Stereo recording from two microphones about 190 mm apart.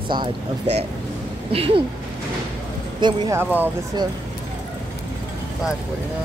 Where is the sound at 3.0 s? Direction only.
25° right (ahead or behind).